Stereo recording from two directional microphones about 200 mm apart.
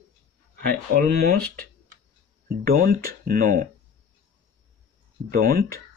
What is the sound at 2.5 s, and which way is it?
Speech, 45° right (ahead or behind).